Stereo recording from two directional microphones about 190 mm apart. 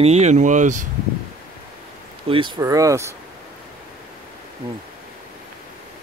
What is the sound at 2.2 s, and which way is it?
Speech, 25° right (ahead or behind).